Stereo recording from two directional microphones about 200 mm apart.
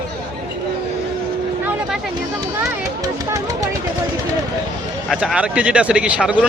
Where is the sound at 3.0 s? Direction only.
15° right (ahead or behind).